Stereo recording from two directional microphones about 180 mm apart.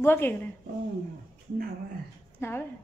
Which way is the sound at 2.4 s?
15° left (ahead or behind).